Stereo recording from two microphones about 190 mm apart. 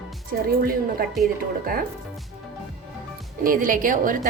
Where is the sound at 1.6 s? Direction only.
50° right (ahead or behind).